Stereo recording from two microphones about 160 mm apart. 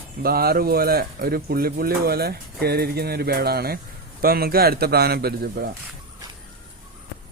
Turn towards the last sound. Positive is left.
turn(degrees=-80)